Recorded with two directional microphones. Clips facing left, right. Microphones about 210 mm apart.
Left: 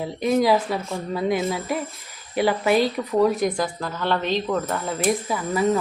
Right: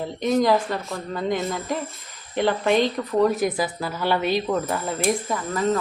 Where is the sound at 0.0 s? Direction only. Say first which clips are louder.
Left 1 dB; 5° left (ahead or behind).